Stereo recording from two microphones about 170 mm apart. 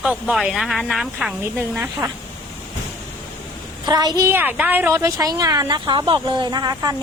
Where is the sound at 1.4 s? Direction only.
15° right (ahead or behind).